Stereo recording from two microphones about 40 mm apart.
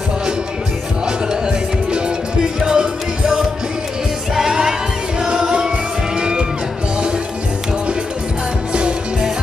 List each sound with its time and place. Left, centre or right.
2.6 s music: centre